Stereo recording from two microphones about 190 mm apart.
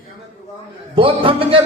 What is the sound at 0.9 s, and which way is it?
Speech, 30° right (ahead or behind).